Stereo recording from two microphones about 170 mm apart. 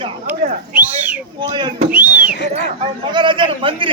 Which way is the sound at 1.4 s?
25° right (ahead or behind).